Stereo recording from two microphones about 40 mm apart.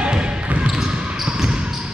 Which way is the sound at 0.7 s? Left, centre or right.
Centre.